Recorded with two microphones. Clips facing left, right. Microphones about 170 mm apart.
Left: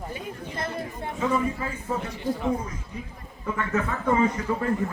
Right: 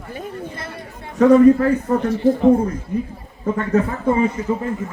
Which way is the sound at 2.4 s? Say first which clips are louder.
Right 14 dB; 55° right (ahead or behind).